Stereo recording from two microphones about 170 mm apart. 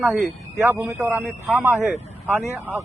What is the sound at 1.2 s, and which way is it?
Speech, 5° right (ahead or behind).